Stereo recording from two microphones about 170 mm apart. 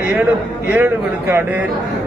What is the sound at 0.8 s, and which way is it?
Speech, 15° right (ahead or behind).